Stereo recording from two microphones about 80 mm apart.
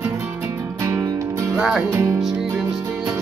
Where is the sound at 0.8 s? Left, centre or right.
Right.